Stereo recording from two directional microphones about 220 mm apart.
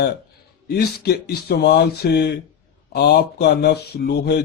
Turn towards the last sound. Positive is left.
turn(degrees=50)  # may be behind; listen again after turning